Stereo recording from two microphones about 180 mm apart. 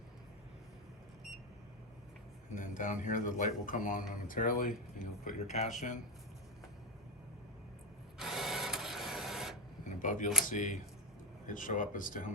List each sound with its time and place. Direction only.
2.6 s speech: 45° left (ahead or behind)
8.2 s printer: centre (ahead or behind)
10.0 s a sound: 45° left (ahead or behind)
10.4 s speech: 45° left (ahead or behind)